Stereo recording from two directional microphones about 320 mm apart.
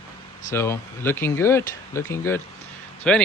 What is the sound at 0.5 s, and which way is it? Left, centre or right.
Speech, centre.